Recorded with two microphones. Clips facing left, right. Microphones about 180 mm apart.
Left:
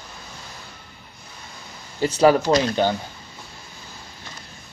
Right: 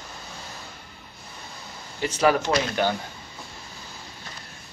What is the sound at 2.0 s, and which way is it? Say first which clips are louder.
Speech: left 5 dB; 30° left (ahead or behind).